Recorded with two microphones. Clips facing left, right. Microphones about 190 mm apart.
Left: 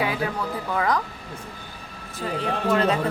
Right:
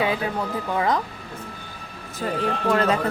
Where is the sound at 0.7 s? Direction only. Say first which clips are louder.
Right 1 dB; 20° right (ahead or behind).